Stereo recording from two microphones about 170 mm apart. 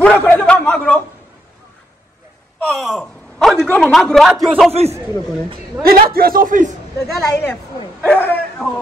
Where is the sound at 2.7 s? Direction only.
Centre (ahead or behind).